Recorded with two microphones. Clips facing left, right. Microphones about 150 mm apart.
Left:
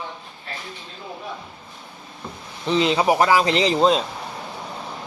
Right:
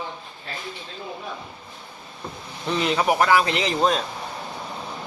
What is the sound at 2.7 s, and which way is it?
A man's voice, 20° left (ahead or behind).